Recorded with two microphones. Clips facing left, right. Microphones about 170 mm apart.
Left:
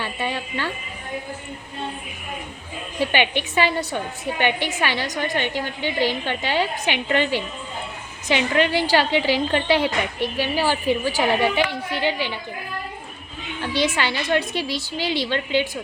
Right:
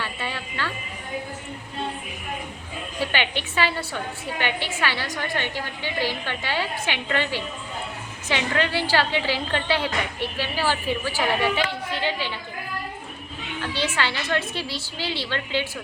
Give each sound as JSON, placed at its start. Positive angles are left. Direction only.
{"t": 0.0, "sound": "a sound", "side_deg": 15}
{"t": 3.0, "sound": "a woman's voice", "side_deg": 15}
{"t": 13.6, "sound": "a woman's voice", "side_deg": 15}